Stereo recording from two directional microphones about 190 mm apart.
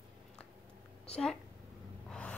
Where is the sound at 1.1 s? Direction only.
5° left (ahead or behind).